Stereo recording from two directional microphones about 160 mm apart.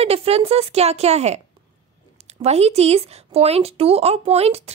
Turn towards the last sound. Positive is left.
turn(degrees=-40)  # may be behind; listen again after turning